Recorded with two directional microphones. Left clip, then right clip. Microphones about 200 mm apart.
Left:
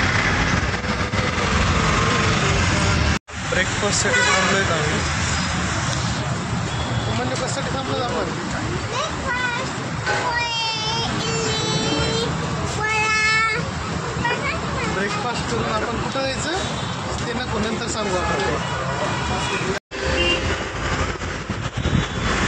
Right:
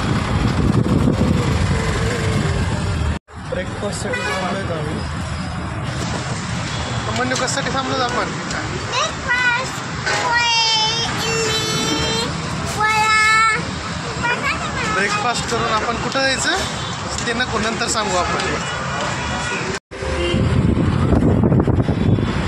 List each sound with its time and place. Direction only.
10.4 s a sound: 25° left (ahead or behind)
13.0 s child singing: 20° right (ahead or behind)
16.2 s speech: 25° right (ahead or behind)